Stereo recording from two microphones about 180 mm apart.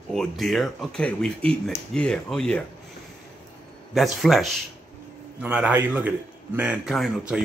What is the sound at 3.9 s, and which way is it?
A man's voice, centre (ahead or behind).